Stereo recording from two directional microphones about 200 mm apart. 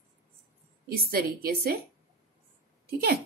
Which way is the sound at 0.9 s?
50° right (ahead or behind).